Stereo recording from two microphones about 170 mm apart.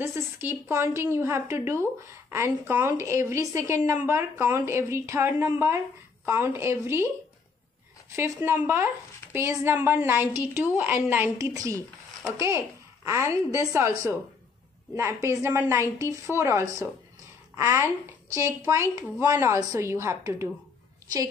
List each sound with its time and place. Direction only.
0.0 s speech: 15° right (ahead or behind)
8.2 s speech: 15° right (ahead or behind)